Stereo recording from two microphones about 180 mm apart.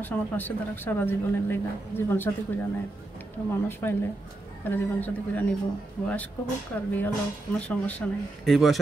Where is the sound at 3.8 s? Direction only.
15° left (ahead or behind).